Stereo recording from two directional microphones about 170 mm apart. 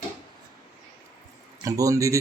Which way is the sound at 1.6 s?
20° right (ahead or behind).